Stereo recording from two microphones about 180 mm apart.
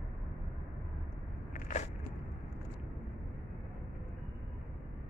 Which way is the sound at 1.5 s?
45° left (ahead or behind).